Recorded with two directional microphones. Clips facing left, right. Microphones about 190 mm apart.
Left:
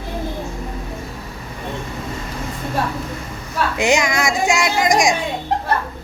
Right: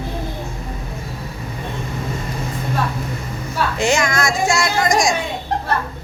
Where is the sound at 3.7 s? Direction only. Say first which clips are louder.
Left 1 dB; 15° left (ahead or behind).